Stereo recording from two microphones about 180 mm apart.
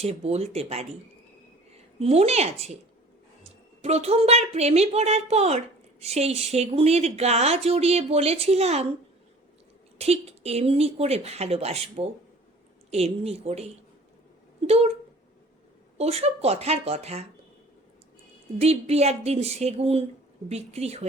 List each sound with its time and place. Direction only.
0.0 s a woman's voice: 35° right (ahead or behind)
3.8 s a woman's voice: 35° right (ahead or behind)
10.0 s a woman's voice: 35° right (ahead or behind)
14.7 s a woman's voice: 35° right (ahead or behind)
16.0 s a woman's voice: 35° right (ahead or behind)
18.6 s a woman's voice: 35° right (ahead or behind)